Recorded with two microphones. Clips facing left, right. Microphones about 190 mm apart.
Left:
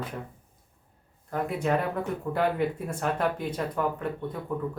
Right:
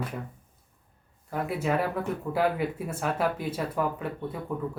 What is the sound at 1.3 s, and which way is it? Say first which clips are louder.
Speech: left 1 dB; 5° right (ahead or behind).